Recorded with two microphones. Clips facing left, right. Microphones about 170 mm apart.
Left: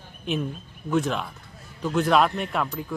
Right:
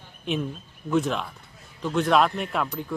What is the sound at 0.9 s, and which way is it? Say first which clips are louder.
Speech: even; centre (ahead or behind).